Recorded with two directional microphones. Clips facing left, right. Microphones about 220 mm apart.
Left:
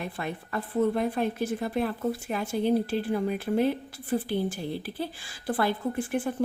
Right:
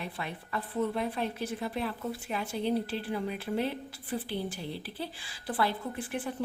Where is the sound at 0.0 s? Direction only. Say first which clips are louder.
Left 5 dB; 50° left (ahead or behind).